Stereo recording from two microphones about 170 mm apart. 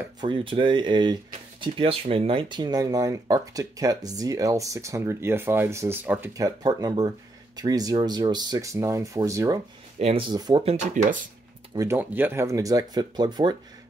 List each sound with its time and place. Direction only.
0.2 s speech: 30° right (ahead or behind)
9.9 s speech: 35° right (ahead or behind)
10.6 s speech: 40° right (ahead or behind)
11.7 s speech: 15° right (ahead or behind)